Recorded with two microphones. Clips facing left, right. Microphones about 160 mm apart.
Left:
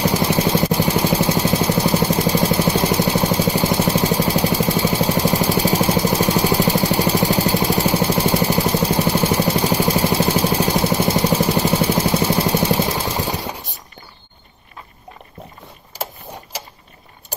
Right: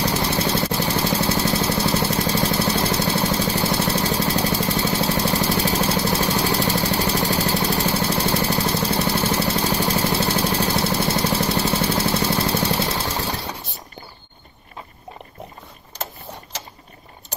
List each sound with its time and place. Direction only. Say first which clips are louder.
0.0 s vehicle: left 4 dB; 15° left (ahead or behind)